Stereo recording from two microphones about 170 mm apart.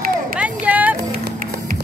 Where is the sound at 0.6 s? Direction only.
10° right (ahead or behind).